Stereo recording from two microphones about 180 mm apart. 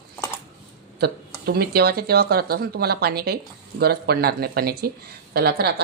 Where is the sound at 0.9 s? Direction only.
60° right (ahead or behind).